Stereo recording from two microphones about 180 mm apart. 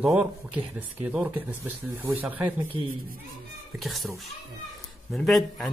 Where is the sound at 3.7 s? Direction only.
Centre (ahead or behind).